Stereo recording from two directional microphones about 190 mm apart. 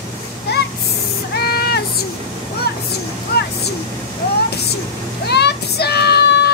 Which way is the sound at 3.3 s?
55° left (ahead or behind).